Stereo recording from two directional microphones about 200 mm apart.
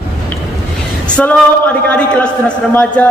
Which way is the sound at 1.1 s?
5° left (ahead or behind).